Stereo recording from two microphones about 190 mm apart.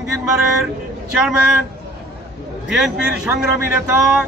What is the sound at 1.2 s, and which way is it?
Speech, 5° right (ahead or behind).